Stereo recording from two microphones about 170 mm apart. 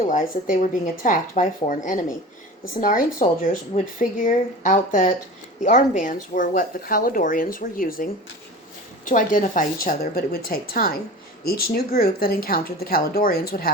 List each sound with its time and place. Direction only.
0.0 s speech: 50° left (ahead or behind)